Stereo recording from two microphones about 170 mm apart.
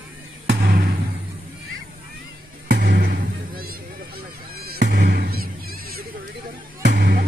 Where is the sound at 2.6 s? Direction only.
80° right.